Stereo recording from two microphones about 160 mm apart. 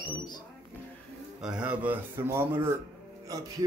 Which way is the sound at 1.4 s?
5° right (ahead or behind).